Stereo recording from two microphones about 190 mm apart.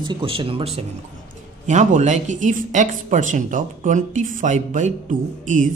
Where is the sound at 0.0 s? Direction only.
25° right (ahead or behind).